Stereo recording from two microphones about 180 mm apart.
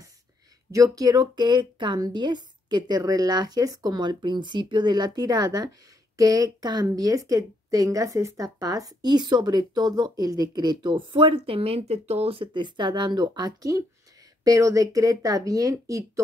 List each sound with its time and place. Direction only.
0.7 s a woman's voice: 20° right (ahead or behind)